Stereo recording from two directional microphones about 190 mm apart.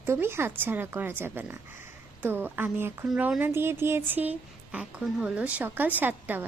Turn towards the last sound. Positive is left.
turn(degrees=-10)  # may be behind; listen again after turning